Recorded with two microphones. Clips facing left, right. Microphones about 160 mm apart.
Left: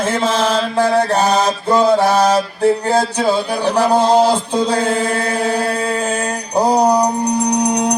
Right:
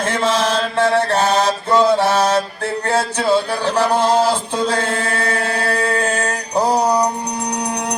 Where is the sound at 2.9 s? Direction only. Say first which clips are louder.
Left 3 dB; 35° left (ahead or behind).